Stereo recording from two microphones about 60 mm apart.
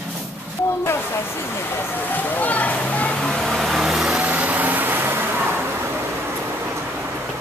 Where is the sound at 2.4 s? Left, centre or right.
Left.